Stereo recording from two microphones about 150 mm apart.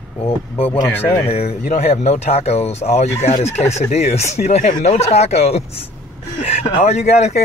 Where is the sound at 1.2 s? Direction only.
45° left (ahead or behind).